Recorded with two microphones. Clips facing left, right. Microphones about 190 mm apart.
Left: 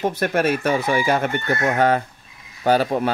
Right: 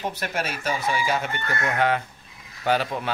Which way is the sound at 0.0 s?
55° left (ahead or behind).